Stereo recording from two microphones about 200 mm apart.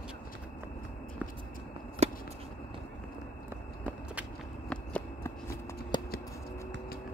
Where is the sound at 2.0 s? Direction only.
30° right (ahead or behind).